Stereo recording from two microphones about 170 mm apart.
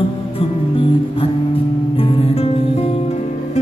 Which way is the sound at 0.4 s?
30° left (ahead or behind).